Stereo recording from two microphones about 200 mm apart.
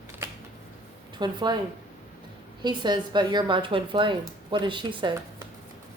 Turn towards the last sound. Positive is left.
turn(degrees=-25)  # may be behind; listen again after turning